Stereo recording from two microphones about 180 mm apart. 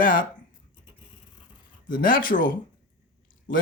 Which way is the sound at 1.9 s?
50° left (ahead or behind).